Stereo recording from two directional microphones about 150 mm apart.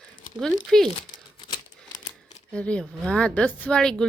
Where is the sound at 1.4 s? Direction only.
30° left (ahead or behind).